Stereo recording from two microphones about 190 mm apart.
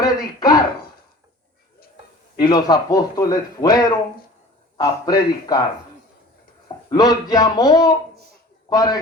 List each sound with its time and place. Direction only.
0.0 s a sound: 20° left (ahead or behind)
2.4 s a man's voice: 20° left (ahead or behind)
6.9 s a man's voice: 20° left (ahead or behind)